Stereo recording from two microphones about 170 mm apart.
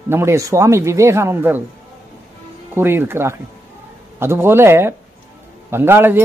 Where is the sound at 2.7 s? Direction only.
15° right (ahead or behind).